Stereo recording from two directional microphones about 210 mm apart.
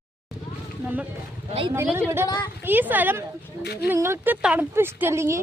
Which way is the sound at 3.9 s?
10° right (ahead or behind).